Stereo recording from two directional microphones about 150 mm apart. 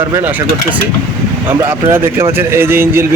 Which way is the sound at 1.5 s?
15° right (ahead or behind).